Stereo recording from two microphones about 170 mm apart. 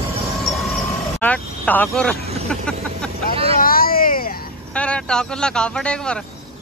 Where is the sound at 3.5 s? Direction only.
60° left (ahead or behind).